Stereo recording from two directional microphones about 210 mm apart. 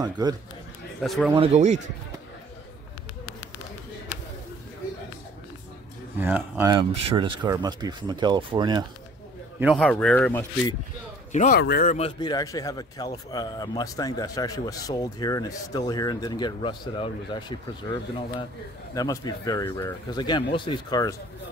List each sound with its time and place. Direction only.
0.0 s speech: 20° right (ahead or behind)
1.0 s speech: centre (ahead or behind)
1.3 s speech: 30° right (ahead or behind)
6.1 s speech: 10° right (ahead or behind)
6.7 s speech: 20° right (ahead or behind)
9.6 s speech: centre (ahead or behind)
11.3 s speech: 35° left (ahead or behind)
12.2 s speech: 20° left (ahead or behind)
18.9 s speech: 20° left (ahead or behind)